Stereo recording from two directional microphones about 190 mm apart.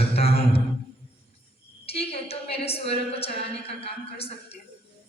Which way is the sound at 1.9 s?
30° left (ahead or behind).